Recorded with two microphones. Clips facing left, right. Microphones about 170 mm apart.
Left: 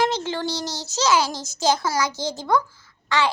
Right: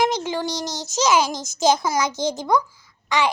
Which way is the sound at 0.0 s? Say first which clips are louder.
Right 1 dB; 15° right (ahead or behind).